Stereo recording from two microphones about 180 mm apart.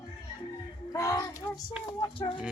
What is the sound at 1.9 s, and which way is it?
Speech, 25° left (ahead or behind).